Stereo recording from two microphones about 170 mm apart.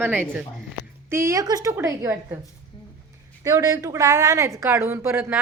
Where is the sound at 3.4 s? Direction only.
20° right (ahead or behind).